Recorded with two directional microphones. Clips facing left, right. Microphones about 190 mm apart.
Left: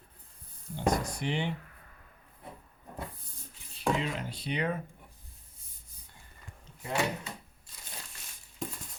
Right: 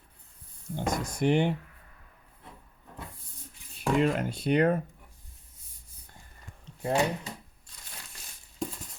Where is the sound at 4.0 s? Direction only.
55° right (ahead or behind).